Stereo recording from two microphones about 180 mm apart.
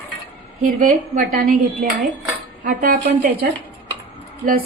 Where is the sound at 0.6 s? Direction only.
50° right (ahead or behind).